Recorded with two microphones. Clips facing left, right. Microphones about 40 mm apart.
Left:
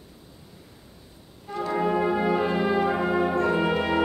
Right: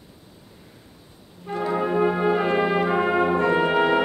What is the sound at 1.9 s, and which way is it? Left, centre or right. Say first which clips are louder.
Brass instrument: right 4 dB; right.